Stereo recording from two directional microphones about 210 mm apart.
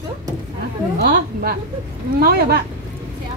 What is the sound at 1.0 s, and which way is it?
A woman's voice, 45° right (ahead or behind).